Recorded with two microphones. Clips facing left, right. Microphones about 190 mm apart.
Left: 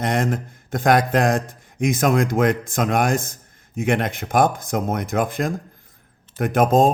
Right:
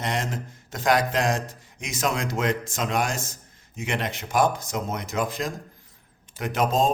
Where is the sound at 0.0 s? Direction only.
55° left (ahead or behind).